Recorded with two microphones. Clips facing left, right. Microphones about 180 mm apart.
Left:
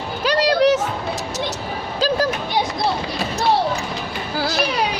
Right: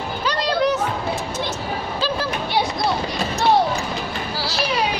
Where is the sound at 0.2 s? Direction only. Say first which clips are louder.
Left 5 dB; 85° left.